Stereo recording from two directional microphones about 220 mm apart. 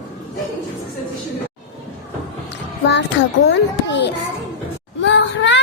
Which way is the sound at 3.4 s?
55° left (ahead or behind).